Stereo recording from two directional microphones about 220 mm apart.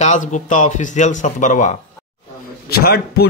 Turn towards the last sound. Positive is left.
turn(degrees=45)  # may be behind; listen again after turning